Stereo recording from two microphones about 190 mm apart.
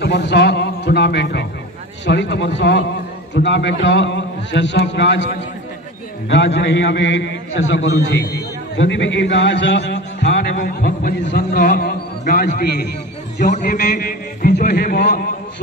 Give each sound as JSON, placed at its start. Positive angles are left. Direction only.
{"t": 0.0, "sound": "a man's voice", "side_deg": 65}
{"t": 10.5, "sound": "a man's voice", "side_deg": 45}
{"t": 11.2, "sound": "a man's voice", "side_deg": 60}
{"t": 13.5, "sound": "a man's voice", "side_deg": 45}